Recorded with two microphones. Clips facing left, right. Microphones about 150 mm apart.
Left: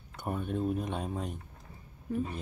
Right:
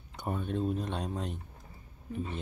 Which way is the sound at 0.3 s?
10° left (ahead or behind).